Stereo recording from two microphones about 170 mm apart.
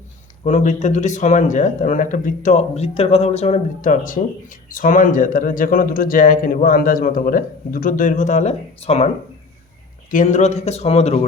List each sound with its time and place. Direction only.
0.4 s speech: 45° left (ahead or behind)
10.1 s speech: 50° left (ahead or behind)